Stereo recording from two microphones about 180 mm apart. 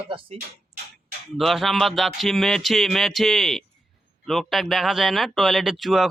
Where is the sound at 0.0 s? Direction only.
30° right (ahead or behind).